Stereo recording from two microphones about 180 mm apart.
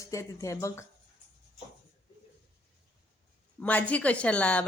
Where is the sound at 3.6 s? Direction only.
5° left (ahead or behind).